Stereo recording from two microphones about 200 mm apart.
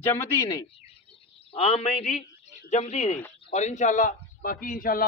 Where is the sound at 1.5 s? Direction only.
30° left (ahead or behind).